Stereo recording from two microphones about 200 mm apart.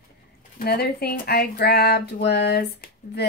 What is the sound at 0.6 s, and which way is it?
Speech, 50° left (ahead or behind).